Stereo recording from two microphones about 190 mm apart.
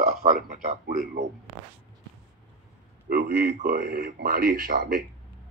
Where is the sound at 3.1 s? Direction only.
55° right (ahead or behind).